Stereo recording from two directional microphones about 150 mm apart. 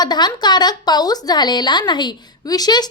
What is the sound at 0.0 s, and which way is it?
Speech, 30° left (ahead or behind).